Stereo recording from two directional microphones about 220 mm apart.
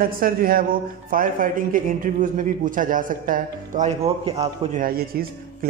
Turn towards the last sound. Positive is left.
turn(degrees=-40)  # may be behind; listen again after turning